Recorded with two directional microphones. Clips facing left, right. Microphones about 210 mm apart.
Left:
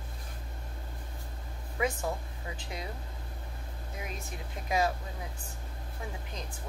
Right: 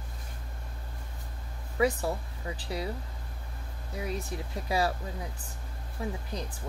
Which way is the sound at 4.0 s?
35° right (ahead or behind).